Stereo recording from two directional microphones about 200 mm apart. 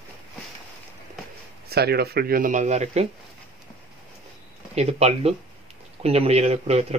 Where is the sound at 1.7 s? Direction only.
55° right (ahead or behind); by 3.1 s 35° right (ahead or behind).